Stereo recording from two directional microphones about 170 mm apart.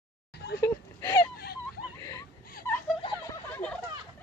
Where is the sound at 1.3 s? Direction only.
65° left (ahead or behind).